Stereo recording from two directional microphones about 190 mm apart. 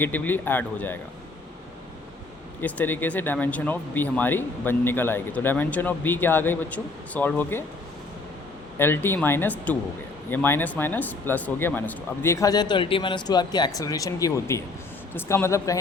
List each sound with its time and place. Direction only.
0.0 s speech: 10° left (ahead or behind)
2.6 s speech: 10° left (ahead or behind)
8.8 s speech: 10° left (ahead or behind)